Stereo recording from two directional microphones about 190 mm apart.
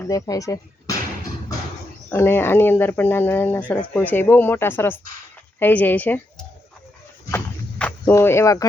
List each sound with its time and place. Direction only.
0.0 s speech: 20° left (ahead or behind)
2.0 s speech: 10° left (ahead or behind)
7.3 s a sound: 10° left (ahead or behind)